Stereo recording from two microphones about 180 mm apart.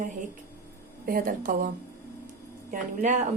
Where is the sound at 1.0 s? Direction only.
50° right (ahead or behind).